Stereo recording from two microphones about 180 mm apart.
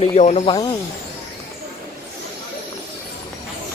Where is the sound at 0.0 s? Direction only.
40° left (ahead or behind).